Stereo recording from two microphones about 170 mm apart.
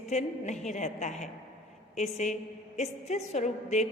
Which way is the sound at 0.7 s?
45° left (ahead or behind).